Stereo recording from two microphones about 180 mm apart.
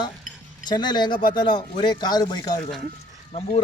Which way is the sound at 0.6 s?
25° left (ahead or behind).